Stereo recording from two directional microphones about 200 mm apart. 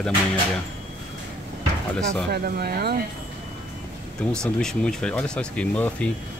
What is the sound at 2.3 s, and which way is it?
Speech, 50° right (ahead or behind).